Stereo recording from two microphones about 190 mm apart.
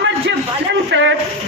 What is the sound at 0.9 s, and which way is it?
Speech, 70° right (ahead or behind).